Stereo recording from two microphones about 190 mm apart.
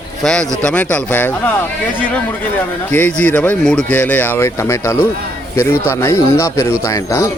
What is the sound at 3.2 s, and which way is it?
Speech, 10° left (ahead or behind).